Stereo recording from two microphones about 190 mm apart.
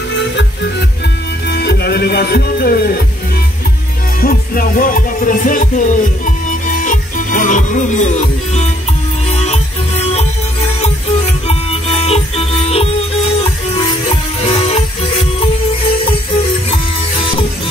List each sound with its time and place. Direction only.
1.5 s music: 55° left (ahead or behind)
4.2 s music: 50° left (ahead or behind); by 10.2 s 35° left (ahead or behind)
11.4 s music: 30° left (ahead or behind)